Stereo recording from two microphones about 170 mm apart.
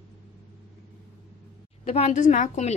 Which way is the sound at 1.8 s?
35° left (ahead or behind).